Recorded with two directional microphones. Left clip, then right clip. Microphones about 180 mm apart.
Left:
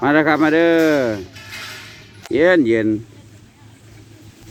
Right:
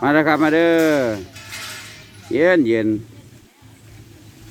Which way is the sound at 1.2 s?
25° right (ahead or behind).